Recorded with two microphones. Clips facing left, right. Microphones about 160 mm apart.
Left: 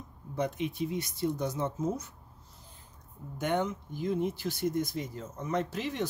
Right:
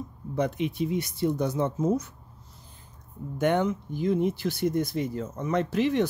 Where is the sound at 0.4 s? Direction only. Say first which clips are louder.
Right 5 dB; 70° right (ahead or behind).